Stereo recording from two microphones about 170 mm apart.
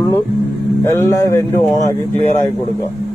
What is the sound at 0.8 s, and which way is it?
Speech, 20° left (ahead or behind).